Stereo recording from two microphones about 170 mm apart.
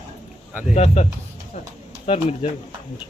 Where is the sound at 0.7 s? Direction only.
40° left (ahead or behind).